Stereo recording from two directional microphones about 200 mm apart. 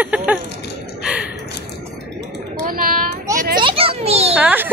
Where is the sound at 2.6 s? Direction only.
45° right (ahead or behind).